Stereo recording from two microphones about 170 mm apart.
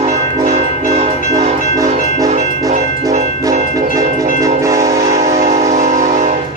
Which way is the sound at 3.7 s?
20° right (ahead or behind).